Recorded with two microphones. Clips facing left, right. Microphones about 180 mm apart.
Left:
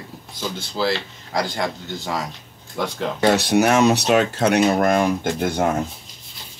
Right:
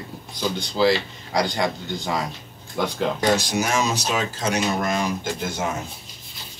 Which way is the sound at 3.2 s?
65° left (ahead or behind).